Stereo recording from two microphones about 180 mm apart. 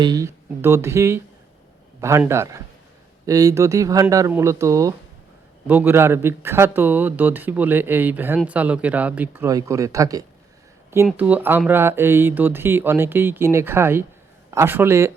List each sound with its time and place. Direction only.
0.0 s speech: 20° right (ahead or behind)